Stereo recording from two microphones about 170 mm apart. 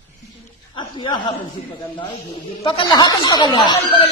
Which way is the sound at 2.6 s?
30° left (ahead or behind).